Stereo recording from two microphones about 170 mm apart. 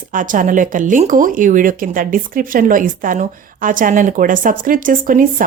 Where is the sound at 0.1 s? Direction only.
50° right (ahead or behind).